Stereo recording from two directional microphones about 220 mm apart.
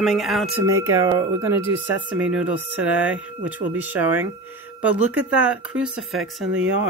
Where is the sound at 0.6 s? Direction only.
10° right (ahead or behind).